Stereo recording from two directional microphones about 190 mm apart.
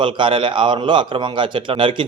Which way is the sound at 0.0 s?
25° right (ahead or behind).